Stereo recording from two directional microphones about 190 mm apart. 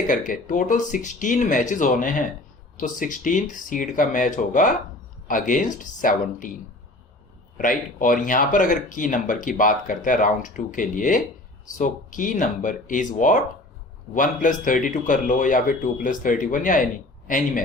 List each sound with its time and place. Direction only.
0.1 s speech: 45° left (ahead or behind)
7.6 s speech: 45° left (ahead or behind)